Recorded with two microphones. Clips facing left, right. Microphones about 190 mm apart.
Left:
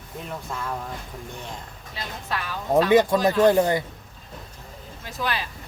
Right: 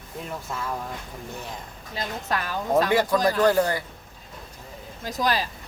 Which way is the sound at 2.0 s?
45° right (ahead or behind).